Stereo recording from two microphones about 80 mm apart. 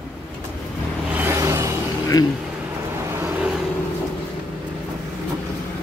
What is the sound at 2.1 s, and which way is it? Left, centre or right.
Speech, left.